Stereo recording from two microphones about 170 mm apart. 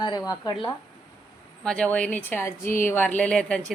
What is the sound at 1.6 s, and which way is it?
A woman's voice, 5° left (ahead or behind).